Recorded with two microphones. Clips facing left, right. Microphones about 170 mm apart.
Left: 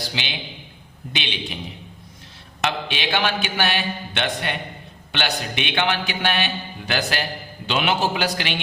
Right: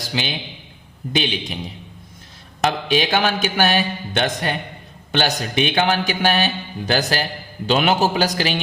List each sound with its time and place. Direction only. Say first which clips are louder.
1.1 s a man's voice: right 7 dB; 40° right (ahead or behind)
2.6 s a man's voice: right 6 dB; 40° right (ahead or behind)